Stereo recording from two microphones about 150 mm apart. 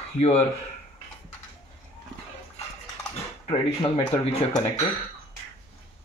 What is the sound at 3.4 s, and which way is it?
Speech, 35° left (ahead or behind).